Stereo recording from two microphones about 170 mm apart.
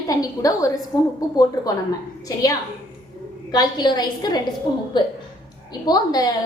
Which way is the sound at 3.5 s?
25° left (ahead or behind).